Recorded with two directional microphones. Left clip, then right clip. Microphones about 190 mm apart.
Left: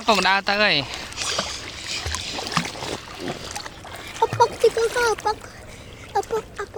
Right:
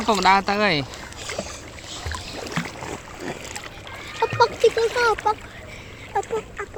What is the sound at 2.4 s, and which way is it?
Boat, 30° left (ahead or behind).